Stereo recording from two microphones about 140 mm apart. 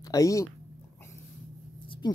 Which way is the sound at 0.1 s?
25° left (ahead or behind).